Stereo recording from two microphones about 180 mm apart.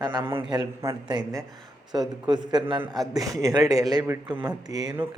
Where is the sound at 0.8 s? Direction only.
15° right (ahead or behind).